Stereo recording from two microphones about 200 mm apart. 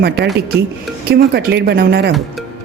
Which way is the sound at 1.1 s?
55° right (ahead or behind).